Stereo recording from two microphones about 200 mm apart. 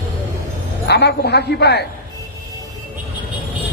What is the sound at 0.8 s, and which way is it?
A man's voice, 55° left (ahead or behind).